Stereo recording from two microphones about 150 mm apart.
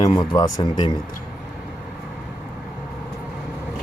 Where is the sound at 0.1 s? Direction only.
30° left (ahead or behind).